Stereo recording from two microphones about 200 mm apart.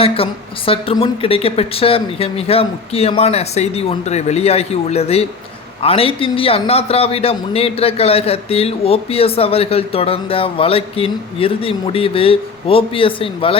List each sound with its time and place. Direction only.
0.0 s a man's voice: 30° left (ahead or behind)